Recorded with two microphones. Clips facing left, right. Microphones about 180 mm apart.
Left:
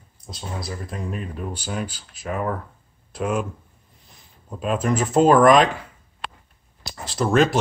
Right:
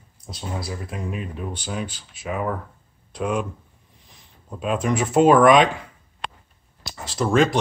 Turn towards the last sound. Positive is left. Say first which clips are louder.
# even
turn(degrees=0)  # may be behind; listen again after turning